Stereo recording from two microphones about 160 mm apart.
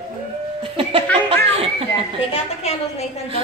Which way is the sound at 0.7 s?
35° right (ahead or behind).